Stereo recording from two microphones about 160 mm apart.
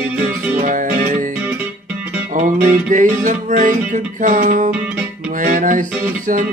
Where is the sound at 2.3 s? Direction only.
55° right (ahead or behind).